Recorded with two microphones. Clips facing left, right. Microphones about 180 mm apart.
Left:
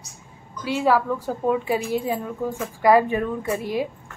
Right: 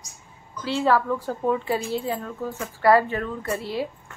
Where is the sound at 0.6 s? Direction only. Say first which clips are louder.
Left 1 dB; 10° left (ahead or behind).